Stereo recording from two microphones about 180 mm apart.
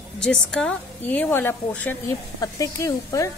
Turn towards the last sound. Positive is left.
turn(degrees=20)  # may be behind; listen again after turning